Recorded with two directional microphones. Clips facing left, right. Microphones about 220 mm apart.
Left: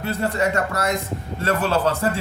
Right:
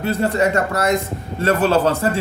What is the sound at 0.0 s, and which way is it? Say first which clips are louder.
Speech: right 4 dB; 25° right (ahead or behind).